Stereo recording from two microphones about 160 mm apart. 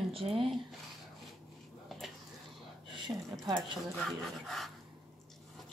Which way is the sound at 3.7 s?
Centre (ahead or behind).